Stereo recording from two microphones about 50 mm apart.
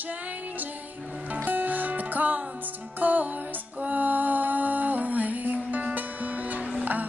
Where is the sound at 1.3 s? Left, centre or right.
Right.